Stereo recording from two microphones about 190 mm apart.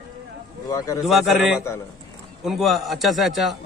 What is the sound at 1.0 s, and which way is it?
Speech, centre (ahead or behind).